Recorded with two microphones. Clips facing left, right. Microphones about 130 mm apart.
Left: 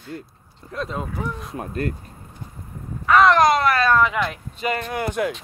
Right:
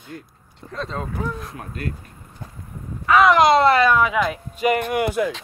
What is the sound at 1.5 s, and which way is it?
Speech, 30° left (ahead or behind).